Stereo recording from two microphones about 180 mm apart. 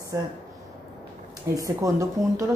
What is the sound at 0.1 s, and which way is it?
Speech, 20° right (ahead or behind).